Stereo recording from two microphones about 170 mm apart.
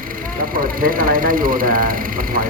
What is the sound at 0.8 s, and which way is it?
Speech, 55° right (ahead or behind).